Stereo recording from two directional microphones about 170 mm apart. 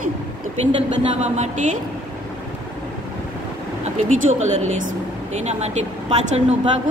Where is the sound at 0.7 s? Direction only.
40° right (ahead or behind).